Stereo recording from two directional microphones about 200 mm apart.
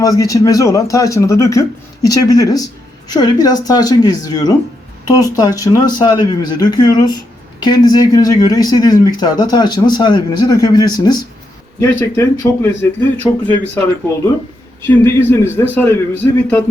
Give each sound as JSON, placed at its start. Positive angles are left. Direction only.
{"t": 0.0, "sound": "speech", "side_deg": 15}
{"t": 14.8, "sound": "speech", "side_deg": 10}